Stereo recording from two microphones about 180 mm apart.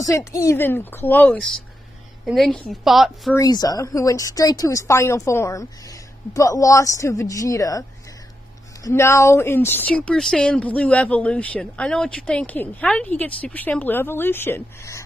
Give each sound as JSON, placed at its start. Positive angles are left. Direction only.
{"t": 0.0, "sound": "a woman's voice", "side_deg": 15}
{"t": 3.3, "sound": "speech", "side_deg": 20}
{"t": 8.8, "sound": "speech", "side_deg": 15}